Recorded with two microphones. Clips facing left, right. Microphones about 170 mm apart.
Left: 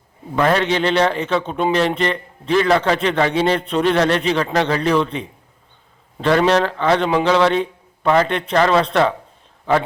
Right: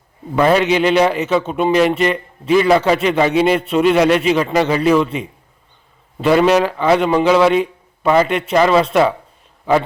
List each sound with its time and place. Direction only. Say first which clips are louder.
0.3 s a man's voice: right 4 dB; 10° right (ahead or behind)